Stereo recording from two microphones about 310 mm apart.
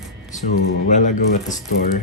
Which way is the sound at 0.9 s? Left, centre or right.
Left.